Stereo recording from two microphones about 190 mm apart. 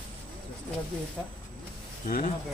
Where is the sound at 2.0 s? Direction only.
45° left (ahead or behind).